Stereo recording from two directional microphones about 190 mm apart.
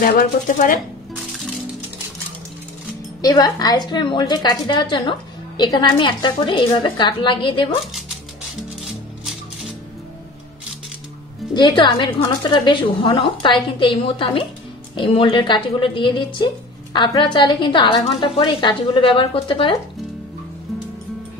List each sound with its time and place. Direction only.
0.0 s speech: 50° left (ahead or behind)
3.2 s a woman's voice: 20° left (ahead or behind)
8.8 s music: centre (ahead or behind)
11.5 s a woman's voice: 25° left (ahead or behind)